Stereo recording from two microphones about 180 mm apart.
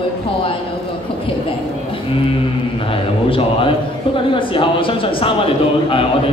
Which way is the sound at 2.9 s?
30° left (ahead or behind).